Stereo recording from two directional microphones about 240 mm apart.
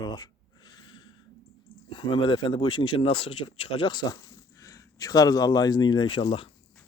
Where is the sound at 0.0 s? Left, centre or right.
Centre.